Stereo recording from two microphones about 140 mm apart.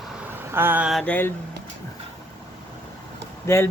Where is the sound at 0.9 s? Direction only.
Centre (ahead or behind).